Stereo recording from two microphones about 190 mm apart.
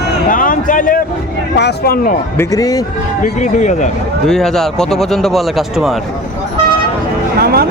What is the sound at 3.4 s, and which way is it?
Speech, 40° left (ahead or behind).